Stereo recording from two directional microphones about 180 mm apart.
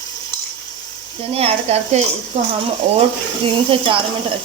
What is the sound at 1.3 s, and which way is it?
Speech, 35° right (ahead or behind).